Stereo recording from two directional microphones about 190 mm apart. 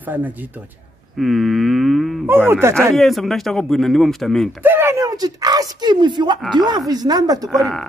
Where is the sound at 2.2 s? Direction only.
10° right (ahead or behind).